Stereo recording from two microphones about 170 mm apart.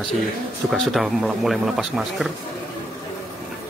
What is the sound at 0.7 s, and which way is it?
Speech, centre (ahead or behind).